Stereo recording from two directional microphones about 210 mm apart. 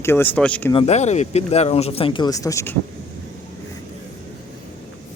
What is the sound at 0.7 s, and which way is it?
Speech, 30° left (ahead or behind).